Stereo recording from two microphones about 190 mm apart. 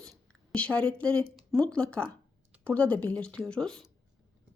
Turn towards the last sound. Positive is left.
turn(degrees=5)  # may be behind; listen again after turning